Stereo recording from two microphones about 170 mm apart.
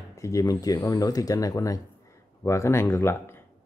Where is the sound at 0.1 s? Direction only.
20° left (ahead or behind).